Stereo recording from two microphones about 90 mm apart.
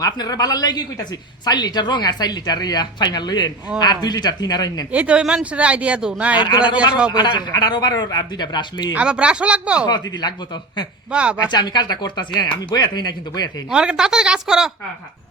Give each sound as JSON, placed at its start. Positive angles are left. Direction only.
{"t": 0.0, "sound": "speech", "side_deg": 45}
{"t": 4.9, "sound": "speech", "side_deg": -15}
{"t": 6.4, "sound": "a man's voice", "side_deg": 60}
{"t": 9.0, "sound": "speech", "side_deg": -10}
{"t": 9.8, "sound": "speech", "side_deg": 50}
{"t": 11.1, "sound": "speech", "side_deg": -10}
{"t": 11.3, "sound": "speech", "side_deg": 50}
{"t": 13.7, "sound": "speech", "side_deg": -10}